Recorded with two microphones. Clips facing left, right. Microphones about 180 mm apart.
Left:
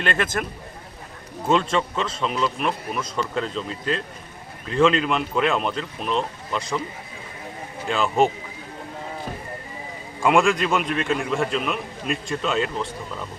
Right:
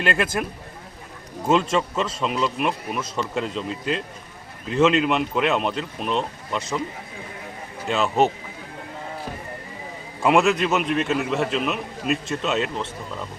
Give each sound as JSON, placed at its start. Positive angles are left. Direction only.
{"t": 0.0, "sound": "speech", "side_deg": -10}
{"t": 1.5, "sound": "a man's voice", "side_deg": -10}
{"t": 7.9, "sound": "a man's voice", "side_deg": 0}
{"t": 10.2, "sound": "a man's voice", "side_deg": -5}